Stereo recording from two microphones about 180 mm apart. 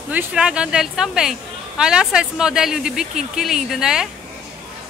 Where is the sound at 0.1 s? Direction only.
5° right (ahead or behind).